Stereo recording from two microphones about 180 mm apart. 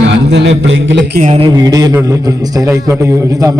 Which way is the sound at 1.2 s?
35° right (ahead or behind).